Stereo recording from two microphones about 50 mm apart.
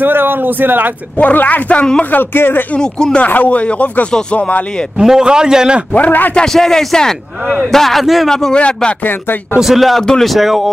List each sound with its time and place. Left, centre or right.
0.0 s speech: right
1.1 s speech: left
2.0 s speech: left
2.7 s speech: centre
3.3 s speech: left
5.0 s a man's voice: centre
5.9 s speech: left
6.3 s a man's voice: centre
8.3 s speech: centre
8.5 s speech: left
9.0 s speech: left
9.6 s a man's voice: centre